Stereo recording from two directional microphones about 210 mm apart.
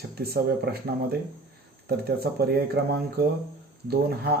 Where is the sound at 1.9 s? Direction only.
50° right (ahead or behind).